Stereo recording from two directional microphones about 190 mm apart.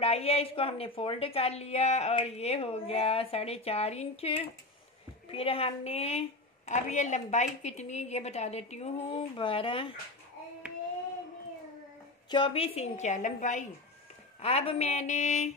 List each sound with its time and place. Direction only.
0.0 s a woman's voice: 35° left (ahead or behind)
12.3 s a woman's voice: 25° left (ahead or behind)